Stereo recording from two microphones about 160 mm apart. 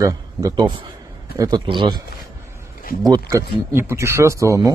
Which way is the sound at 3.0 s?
25° right (ahead or behind).